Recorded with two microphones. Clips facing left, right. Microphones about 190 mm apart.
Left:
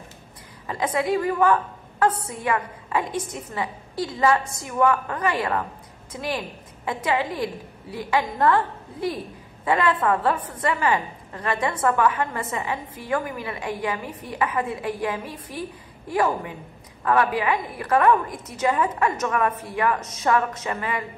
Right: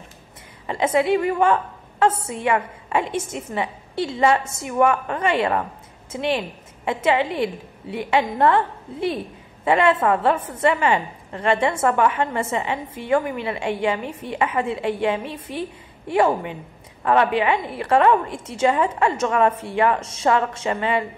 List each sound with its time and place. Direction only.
0.7 s a woman's voice: 25° right (ahead or behind)